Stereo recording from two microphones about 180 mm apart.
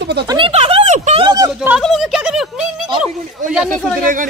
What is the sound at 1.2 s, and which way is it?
Speech, 20° right (ahead or behind).